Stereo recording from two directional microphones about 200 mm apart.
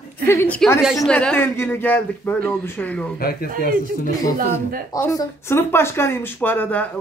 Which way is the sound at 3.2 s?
50° left (ahead or behind).